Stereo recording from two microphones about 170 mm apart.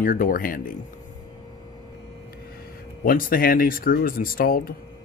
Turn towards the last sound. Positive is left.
turn(degrees=60)  # may be behind; listen again after turning